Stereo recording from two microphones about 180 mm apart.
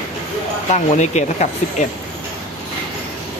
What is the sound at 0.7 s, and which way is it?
Speech, 40° left (ahead or behind).